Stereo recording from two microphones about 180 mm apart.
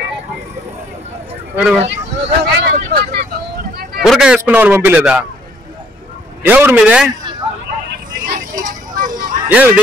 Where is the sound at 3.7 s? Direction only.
60° right (ahead or behind).